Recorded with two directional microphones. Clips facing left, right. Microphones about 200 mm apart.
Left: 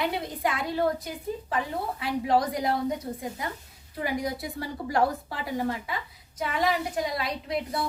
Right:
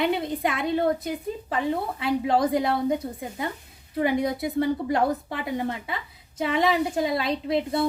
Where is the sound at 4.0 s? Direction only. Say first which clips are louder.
Right 6 dB; 25° right (ahead or behind).